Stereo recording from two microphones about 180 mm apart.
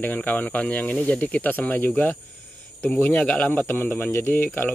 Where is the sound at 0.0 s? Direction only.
10° left (ahead or behind).